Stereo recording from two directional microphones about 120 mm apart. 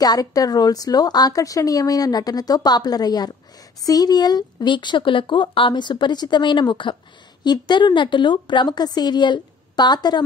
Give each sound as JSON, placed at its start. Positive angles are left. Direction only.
{"t": 0.0, "sound": "a woman's voice", "side_deg": 30}